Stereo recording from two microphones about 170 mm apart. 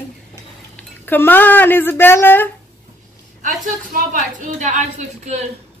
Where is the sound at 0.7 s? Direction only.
10° left (ahead or behind).